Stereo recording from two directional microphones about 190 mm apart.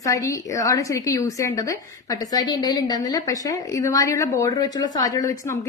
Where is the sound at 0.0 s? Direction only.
15° left (ahead or behind).